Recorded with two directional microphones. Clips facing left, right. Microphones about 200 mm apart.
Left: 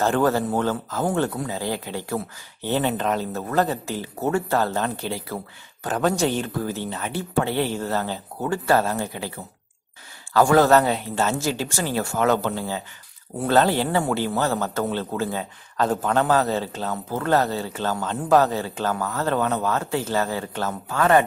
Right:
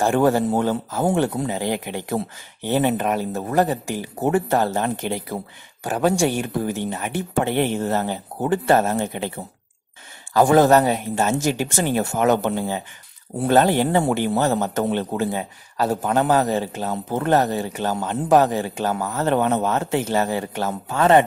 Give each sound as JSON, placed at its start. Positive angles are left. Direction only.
{"t": 0.0, "sound": "speech", "side_deg": -15}